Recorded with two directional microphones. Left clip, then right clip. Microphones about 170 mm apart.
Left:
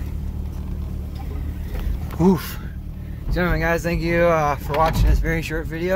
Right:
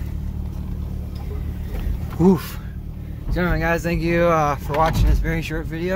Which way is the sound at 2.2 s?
Centre (ahead or behind).